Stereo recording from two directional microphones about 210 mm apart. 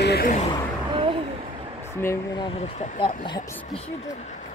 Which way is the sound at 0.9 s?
25° right (ahead or behind).